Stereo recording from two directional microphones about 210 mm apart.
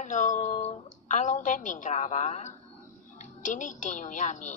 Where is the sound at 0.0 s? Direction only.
35° left (ahead or behind).